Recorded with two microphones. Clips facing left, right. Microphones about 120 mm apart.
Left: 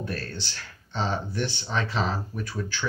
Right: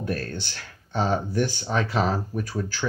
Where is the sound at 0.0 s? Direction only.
50° right (ahead or behind).